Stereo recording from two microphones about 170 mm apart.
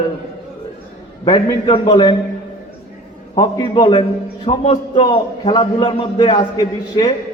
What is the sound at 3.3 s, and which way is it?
A man's voice, 25° left (ahead or behind).